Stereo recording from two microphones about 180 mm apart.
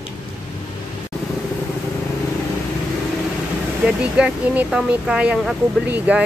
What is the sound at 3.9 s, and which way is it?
Speech, 5° right (ahead or behind).